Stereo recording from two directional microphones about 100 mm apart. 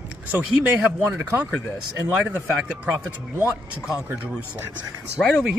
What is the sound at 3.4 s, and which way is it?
Speech, 10° right (ahead or behind).